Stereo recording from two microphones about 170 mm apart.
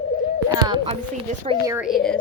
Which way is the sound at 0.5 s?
25° right (ahead or behind).